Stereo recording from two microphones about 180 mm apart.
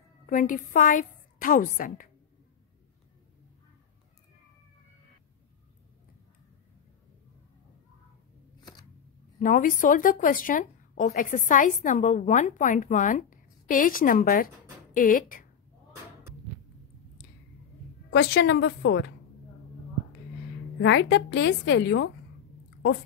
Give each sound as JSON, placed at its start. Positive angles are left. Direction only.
{"t": 0.3, "sound": "speech", "side_deg": 50}
{"t": 8.5, "sound": "camera", "side_deg": 20}
{"t": 9.4, "sound": "speech", "side_deg": 50}
{"t": 18.1, "sound": "a woman's voice", "side_deg": 65}
{"t": 20.8, "sound": "a woman's voice", "side_deg": 80}